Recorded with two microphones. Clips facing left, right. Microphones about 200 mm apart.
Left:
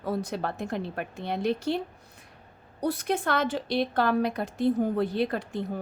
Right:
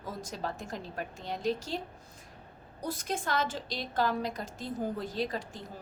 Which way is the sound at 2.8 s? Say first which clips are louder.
Left 8 dB; 65° left (ahead or behind).